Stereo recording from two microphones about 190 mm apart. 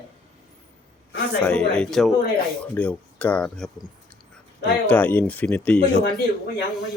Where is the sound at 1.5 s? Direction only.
5° left (ahead or behind).